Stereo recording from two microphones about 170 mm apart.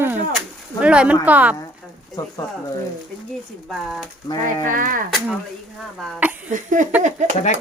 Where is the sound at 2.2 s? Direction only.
20° left (ahead or behind).